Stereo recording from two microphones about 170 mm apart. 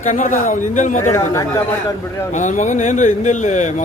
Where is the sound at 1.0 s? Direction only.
15° left (ahead or behind).